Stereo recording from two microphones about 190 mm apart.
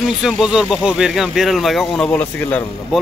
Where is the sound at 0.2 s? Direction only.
Centre (ahead or behind).